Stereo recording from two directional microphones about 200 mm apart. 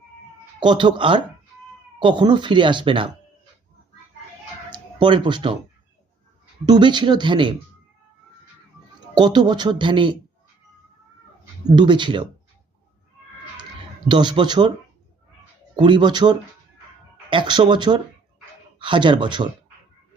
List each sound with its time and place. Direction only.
0.6 s speech: 25° right (ahead or behind)
4.7 s speech: 25° right (ahead or behind)
6.7 s speech: 20° right (ahead or behind)
9.1 s speech: 20° right (ahead or behind)
11.8 s speech: 25° right (ahead or behind)
14.1 s speech: 20° right (ahead or behind)
15.7 s speech: 25° right (ahead or behind)